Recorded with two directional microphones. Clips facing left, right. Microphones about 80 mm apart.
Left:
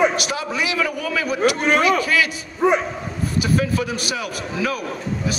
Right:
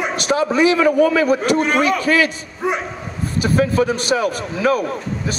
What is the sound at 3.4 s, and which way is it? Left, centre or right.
A man's voice, right.